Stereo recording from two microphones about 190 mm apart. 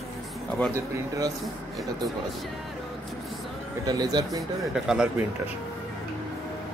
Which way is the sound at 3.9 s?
20° right (ahead or behind).